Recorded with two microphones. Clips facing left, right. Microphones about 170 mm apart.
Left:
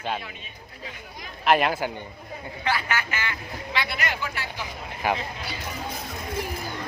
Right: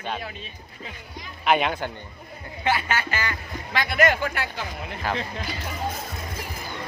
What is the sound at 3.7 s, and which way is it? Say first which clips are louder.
Speech: right 8 dB; 45° right (ahead or behind).